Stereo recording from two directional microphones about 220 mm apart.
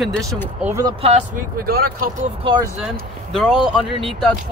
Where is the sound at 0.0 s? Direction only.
Centre (ahead or behind).